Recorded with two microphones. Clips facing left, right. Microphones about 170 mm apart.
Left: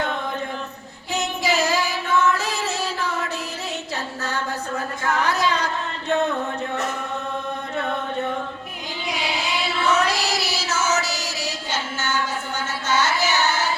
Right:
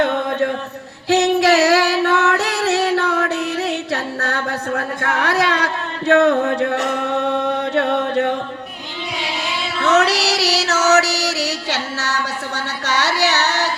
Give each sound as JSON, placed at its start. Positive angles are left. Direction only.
{"t": 0.0, "sound": "a sound", "side_deg": -70}
{"t": 1.0, "sound": "singing", "side_deg": -75}
{"t": 9.8, "sound": "chant", "side_deg": -75}